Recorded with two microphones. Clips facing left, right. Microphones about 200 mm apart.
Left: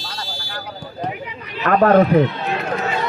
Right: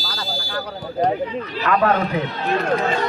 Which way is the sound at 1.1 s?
35° right (ahead or behind).